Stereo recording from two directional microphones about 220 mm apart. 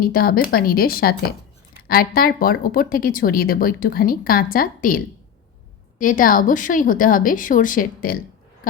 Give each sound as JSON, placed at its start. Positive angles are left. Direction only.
{"t": 0.0, "sound": "a woman's voice", "side_deg": 45}